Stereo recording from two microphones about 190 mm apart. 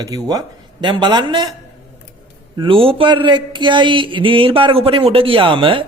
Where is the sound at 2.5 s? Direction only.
30° right (ahead or behind).